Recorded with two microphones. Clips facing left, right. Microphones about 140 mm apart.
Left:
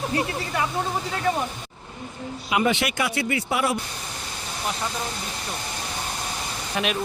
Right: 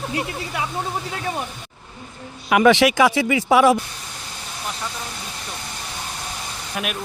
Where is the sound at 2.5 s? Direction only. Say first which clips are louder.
Right 8 dB; 90° right.